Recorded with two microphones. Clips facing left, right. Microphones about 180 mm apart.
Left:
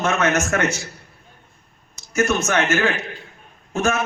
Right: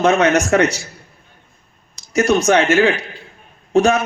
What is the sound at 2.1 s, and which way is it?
A man's voice, 35° right (ahead or behind).